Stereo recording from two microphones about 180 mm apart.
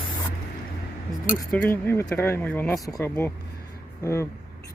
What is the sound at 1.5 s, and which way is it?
Speech, 10° left (ahead or behind).